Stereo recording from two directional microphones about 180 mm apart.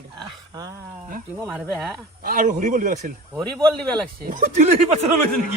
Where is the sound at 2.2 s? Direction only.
45° right (ahead or behind).